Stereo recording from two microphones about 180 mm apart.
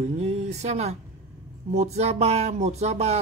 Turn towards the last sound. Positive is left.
turn(degrees=-35)  # may be behind; listen again after turning